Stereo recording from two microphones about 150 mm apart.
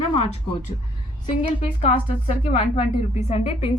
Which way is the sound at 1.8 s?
45° left (ahead or behind).